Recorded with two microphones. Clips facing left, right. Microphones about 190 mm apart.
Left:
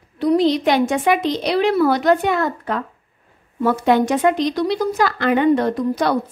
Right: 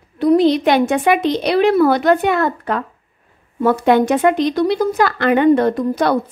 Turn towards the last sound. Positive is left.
turn(degrees=-55)  # may be behind; listen again after turning